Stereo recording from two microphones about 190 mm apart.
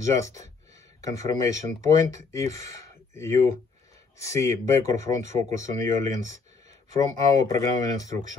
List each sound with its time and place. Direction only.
0.2 s speech: 15° left (ahead or behind)